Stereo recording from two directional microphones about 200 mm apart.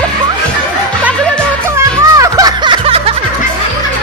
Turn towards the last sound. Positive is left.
turn(degrees=-30)  # may be behind; listen again after turning